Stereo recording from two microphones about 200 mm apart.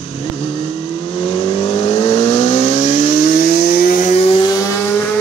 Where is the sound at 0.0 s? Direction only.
30° left (ahead or behind).